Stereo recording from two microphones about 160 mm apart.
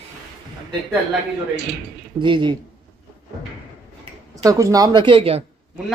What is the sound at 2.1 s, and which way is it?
Speech, 30° right (ahead or behind).